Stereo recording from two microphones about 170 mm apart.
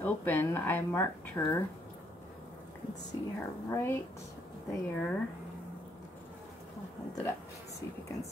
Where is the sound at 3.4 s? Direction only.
15° left (ahead or behind).